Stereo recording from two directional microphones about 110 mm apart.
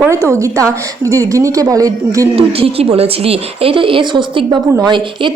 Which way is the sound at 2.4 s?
60° right (ahead or behind).